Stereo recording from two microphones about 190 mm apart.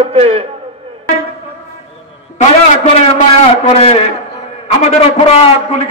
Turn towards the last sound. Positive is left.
turn(degrees=35)  # may be behind; listen again after turning